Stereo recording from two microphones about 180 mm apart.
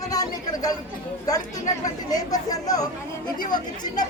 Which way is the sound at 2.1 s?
20° left (ahead or behind).